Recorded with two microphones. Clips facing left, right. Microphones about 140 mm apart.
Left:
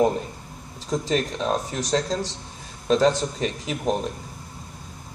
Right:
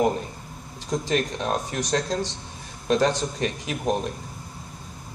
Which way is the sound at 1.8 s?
30° left (ahead or behind).